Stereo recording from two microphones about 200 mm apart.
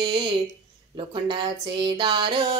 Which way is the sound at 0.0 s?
25° right (ahead or behind).